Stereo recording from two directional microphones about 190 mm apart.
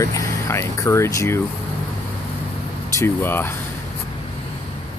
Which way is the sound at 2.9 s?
10° left (ahead or behind).